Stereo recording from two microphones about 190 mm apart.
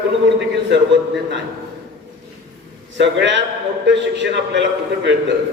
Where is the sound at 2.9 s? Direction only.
70° right (ahead or behind).